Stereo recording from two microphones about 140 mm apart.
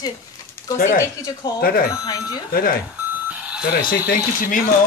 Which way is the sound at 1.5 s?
90° left.